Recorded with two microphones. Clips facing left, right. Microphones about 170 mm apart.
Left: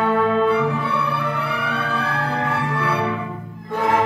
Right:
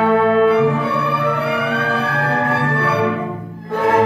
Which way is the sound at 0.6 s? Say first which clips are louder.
Right 5 dB; 50° right (ahead or behind).